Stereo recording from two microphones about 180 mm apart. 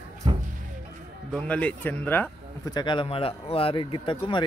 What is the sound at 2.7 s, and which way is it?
Speech, 25° left (ahead or behind).